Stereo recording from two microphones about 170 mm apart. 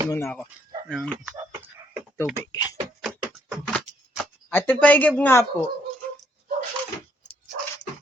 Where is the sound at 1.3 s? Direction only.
20° right (ahead or behind).